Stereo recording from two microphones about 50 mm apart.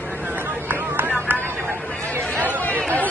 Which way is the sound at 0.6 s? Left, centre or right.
Right.